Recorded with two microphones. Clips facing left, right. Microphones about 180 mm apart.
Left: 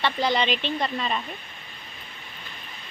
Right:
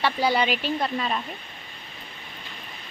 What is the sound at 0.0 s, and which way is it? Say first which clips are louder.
Speech: right 1 dB; 10° right (ahead or behind).